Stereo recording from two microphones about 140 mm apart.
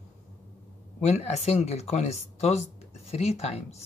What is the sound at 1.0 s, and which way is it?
Speech, 50° left (ahead or behind).